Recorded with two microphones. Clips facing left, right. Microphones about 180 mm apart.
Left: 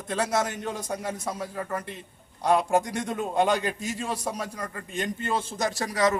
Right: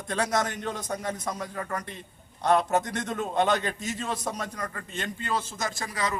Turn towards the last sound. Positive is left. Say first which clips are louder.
# left 6 dB
turn(degrees=40)  # may be behind; listen again after turning